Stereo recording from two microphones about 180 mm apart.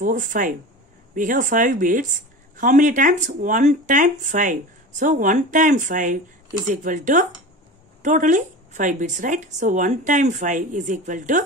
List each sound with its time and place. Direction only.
0.0 s a woman's voice: 45° right (ahead or behind)